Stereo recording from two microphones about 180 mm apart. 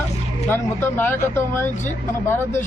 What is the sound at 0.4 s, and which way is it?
A man's voice, 10° left (ahead or behind).